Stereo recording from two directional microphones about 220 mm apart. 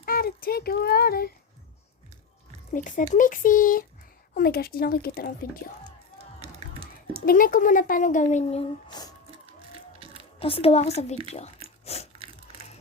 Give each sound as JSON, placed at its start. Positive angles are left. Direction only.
{"t": 0.0, "sound": "speech", "side_deg": 40}
{"t": 2.7, "sound": "speech", "side_deg": 35}
{"t": 6.4, "sound": "a sound", "side_deg": -25}
{"t": 7.3, "sound": "speech", "side_deg": 40}
{"t": 10.4, "sound": "speech", "side_deg": 25}
{"t": 11.9, "sound": "biting", "side_deg": 30}